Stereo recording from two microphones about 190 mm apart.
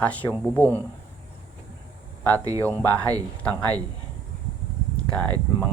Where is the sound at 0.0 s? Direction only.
10° left (ahead or behind).